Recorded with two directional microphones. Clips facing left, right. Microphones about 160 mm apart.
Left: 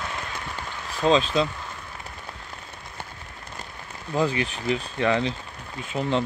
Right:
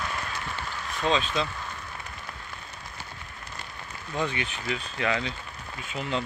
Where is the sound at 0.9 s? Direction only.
35° left (ahead or behind).